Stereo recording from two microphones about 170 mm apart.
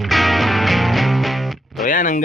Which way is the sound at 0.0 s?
Centre (ahead or behind).